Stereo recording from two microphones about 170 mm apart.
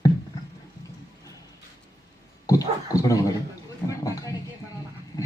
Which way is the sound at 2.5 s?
20° left (ahead or behind).